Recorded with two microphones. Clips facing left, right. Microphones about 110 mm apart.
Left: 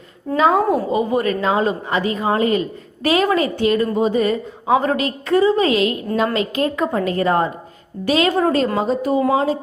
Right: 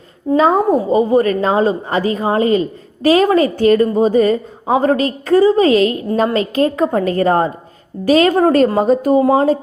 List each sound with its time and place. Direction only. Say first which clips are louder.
0.3 s a woman's voice: right 3 dB; 40° right (ahead or behind)
9.2 s a woman's voice: right 5 dB; 35° right (ahead or behind)